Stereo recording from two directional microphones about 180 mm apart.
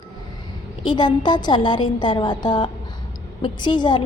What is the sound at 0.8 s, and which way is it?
A woman's voice, 25° left (ahead or behind).